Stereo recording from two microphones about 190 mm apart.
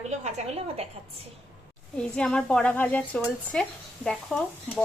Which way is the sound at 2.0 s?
5° left (ahead or behind).